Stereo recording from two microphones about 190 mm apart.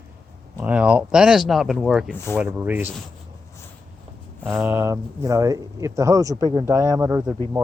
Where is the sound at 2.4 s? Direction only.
5° right (ahead or behind).